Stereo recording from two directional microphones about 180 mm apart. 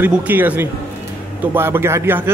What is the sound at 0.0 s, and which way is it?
Speech, 10° right (ahead or behind).